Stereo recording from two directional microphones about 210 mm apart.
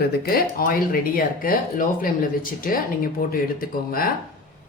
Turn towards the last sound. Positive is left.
turn(degrees=45)  # may be behind; listen again after turning